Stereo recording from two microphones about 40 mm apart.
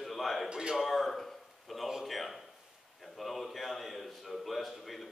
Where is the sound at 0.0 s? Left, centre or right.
Centre.